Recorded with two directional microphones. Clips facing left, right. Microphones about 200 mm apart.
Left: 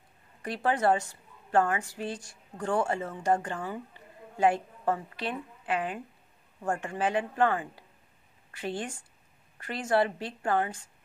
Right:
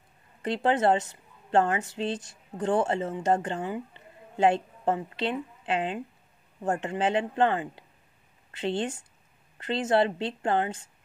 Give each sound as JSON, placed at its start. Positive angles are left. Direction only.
{"t": 0.4, "sound": "a woman's voice", "side_deg": -25}